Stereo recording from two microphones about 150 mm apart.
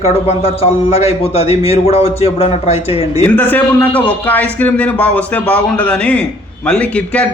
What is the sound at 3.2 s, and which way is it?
A man's voice, 10° left (ahead or behind).